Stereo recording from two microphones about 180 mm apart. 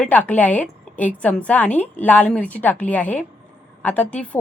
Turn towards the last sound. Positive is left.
turn(degrees=10)  # may be behind; listen again after turning